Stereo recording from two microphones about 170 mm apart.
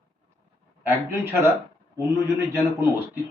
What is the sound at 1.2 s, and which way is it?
A man's voice, 15° right (ahead or behind).